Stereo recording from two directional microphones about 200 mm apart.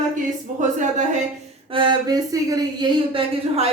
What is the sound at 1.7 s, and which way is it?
Speech, 20° right (ahead or behind).